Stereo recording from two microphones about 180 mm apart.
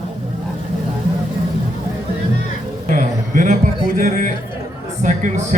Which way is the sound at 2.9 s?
45° right (ahead or behind).